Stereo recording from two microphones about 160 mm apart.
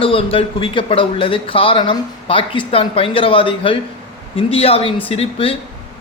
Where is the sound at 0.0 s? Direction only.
35° left (ahead or behind).